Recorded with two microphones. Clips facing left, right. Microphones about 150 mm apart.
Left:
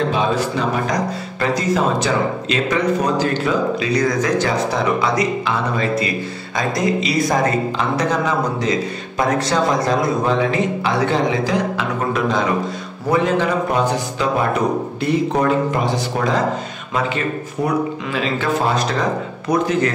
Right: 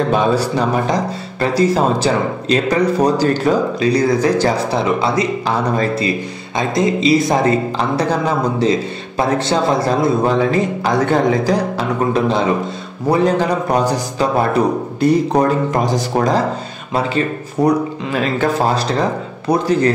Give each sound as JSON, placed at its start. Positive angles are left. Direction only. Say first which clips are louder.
{"t": 0.4, "sound": "speech", "louder": "right 3 dB", "side_deg": -30}
{"t": 9.5, "sound": "speech", "louder": "right 2 dB", "side_deg": -30}
{"t": 10.8, "sound": "a man's voice", "louder": "right 4 dB", "side_deg": -45}
{"t": 13.1, "sound": "speech", "louder": "right 2 dB", "side_deg": -35}
{"t": 15.0, "sound": "speech", "louder": "right 6 dB", "side_deg": -40}
{"t": 19.5, "sound": "speech", "louder": "right 3 dB", "side_deg": -35}